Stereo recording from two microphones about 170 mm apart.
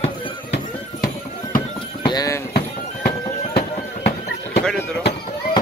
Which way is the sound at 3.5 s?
65° left (ahead or behind).